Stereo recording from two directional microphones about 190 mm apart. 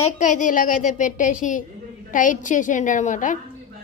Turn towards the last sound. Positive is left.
turn(degrees=40)  # may be behind; listen again after turning